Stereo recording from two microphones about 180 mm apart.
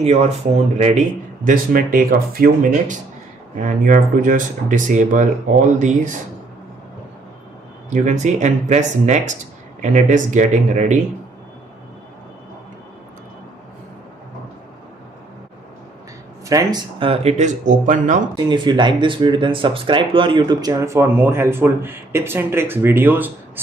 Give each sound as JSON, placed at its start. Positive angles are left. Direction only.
{"t": 0.0, "sound": "speech", "side_deg": -35}
{"t": 7.9, "sound": "speech", "side_deg": -40}
{"t": 16.4, "sound": "speech", "side_deg": -20}
{"t": 17.0, "sound": "speech", "side_deg": -35}
{"t": 18.3, "sound": "speech", "side_deg": -25}